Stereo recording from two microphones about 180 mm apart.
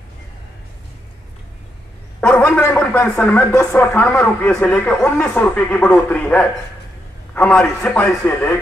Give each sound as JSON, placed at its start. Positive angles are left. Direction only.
{"t": 2.1, "sound": "speech", "side_deg": 5}